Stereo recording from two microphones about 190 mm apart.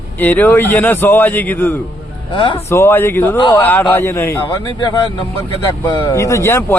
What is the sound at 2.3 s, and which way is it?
Speech, 25° left (ahead or behind).